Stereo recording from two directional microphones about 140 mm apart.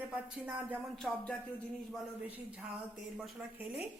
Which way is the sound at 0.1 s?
10° right (ahead or behind).